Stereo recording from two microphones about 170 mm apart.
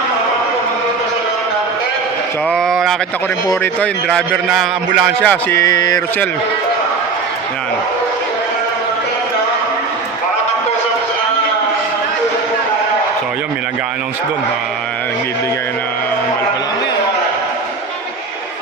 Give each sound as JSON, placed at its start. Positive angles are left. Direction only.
{"t": 2.5, "sound": "a sound", "side_deg": 5}
{"t": 3.5, "sound": "a man's voice", "side_deg": 10}
{"t": 4.4, "sound": "a man's voice", "side_deg": 0}
{"t": 5.2, "sound": "music", "side_deg": 10}